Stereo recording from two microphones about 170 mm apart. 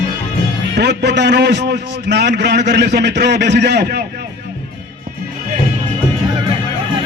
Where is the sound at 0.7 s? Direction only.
85° right.